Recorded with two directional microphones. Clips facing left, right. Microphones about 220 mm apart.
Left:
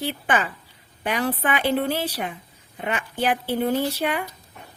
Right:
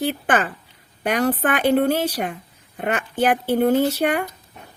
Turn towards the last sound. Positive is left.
turn(degrees=-45)  # may be behind; listen again after turning